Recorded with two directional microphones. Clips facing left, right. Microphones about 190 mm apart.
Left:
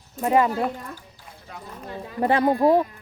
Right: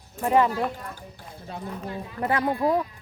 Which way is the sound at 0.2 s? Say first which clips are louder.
Left 1 dB; 20° left (ahead or behind).